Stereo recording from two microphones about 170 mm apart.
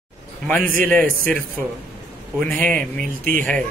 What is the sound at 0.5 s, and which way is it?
Speech, 10° left (ahead or behind).